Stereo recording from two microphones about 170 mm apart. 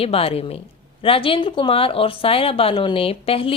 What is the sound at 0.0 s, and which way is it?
Speech, 35° left (ahead or behind).